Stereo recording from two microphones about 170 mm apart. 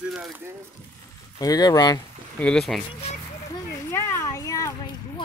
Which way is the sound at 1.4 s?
20° left (ahead or behind).